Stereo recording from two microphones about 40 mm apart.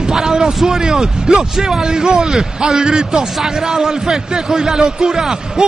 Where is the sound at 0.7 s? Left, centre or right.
Centre.